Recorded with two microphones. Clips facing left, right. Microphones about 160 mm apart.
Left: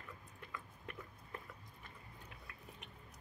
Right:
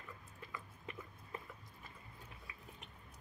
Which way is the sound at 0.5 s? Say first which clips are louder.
Right 1 dB; centre (ahead or behind).